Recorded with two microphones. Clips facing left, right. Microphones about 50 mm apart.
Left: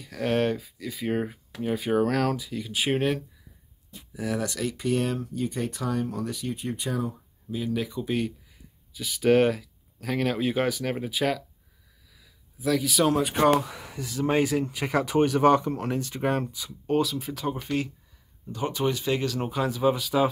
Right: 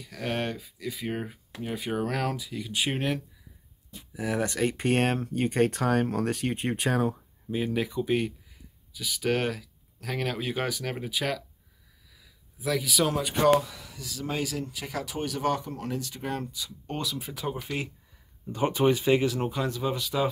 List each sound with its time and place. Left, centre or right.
0.0 s speech: centre
4.1 s speech: centre
4.4 s speech: right
4.7 s speech: right
7.7 s speech: centre
8.9 s speech: centre
12.1 s a sound: centre
13.5 s speech: left
16.9 s speech: centre
18.5 s speech: right
19.4 s speech: centre